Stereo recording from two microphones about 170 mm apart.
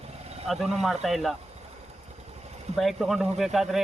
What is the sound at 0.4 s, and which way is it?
Speech, centre (ahead or behind).